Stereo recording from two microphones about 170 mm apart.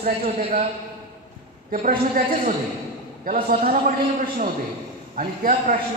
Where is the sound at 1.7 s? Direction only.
55° right (ahead or behind).